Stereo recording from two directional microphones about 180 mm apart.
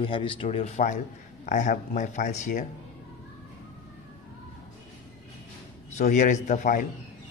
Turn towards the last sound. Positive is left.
turn(degrees=45)  # may be behind; listen again after turning